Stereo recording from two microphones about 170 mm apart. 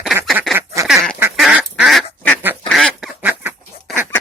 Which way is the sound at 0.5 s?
20° right (ahead or behind).